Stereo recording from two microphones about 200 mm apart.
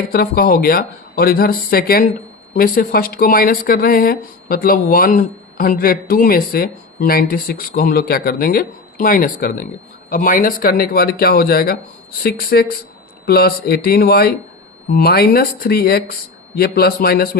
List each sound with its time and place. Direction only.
0.1 s speech: 50° left (ahead or behind)